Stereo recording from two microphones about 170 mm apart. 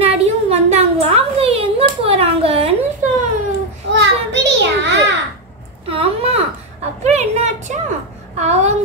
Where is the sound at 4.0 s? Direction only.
90° right.